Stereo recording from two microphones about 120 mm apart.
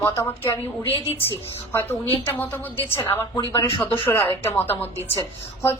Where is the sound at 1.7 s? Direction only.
20° left (ahead or behind).